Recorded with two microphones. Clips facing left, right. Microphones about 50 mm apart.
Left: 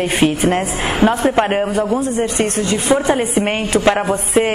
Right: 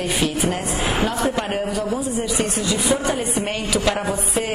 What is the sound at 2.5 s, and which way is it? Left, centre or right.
A woman's voice, left.